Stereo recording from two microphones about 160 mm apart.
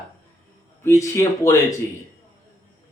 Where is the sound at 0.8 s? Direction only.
15° left (ahead or behind).